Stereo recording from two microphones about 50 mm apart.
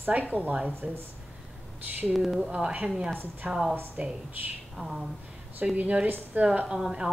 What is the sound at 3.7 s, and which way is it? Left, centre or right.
Speech, right.